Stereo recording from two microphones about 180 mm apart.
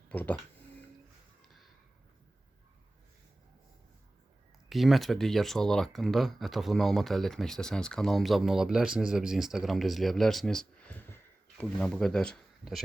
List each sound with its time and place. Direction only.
0.1 s speech: 10° left (ahead or behind)
4.7 s speech: centre (ahead or behind)